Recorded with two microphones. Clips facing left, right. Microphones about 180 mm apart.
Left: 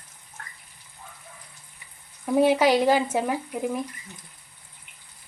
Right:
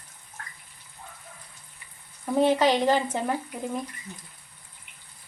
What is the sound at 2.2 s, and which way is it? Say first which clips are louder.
Speech: left 2 dB; 10° left (ahead or behind).